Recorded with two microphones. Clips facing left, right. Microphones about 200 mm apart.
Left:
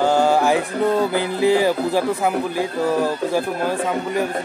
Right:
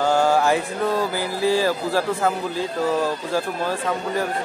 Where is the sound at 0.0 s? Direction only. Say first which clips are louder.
Left 2 dB; 15° left (ahead or behind).